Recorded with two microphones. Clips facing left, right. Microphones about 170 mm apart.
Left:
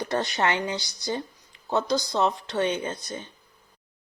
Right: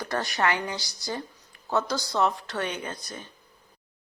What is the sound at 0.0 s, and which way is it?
Speech, 25° left (ahead or behind).